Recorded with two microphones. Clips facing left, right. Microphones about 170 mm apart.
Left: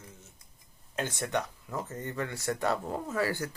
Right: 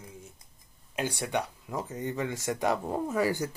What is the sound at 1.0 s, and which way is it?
Speech, 10° right (ahead or behind).